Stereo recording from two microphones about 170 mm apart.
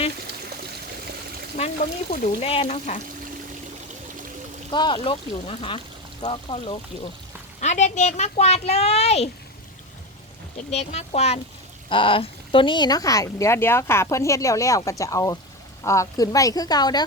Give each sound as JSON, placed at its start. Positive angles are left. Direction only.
{"t": 2.4, "sound": "speech", "side_deg": 35}
{"t": 4.7, "sound": "speech", "side_deg": 25}
{"t": 7.6, "sound": "speech", "side_deg": 45}
{"t": 10.7, "sound": "speech", "side_deg": 40}